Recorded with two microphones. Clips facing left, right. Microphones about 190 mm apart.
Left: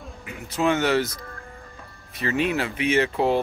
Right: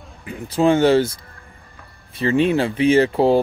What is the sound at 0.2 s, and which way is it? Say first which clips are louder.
Speech: right 6 dB; 35° right (ahead or behind).